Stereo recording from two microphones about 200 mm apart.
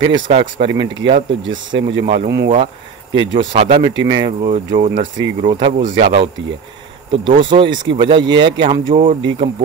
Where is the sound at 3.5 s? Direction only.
30° right (ahead or behind).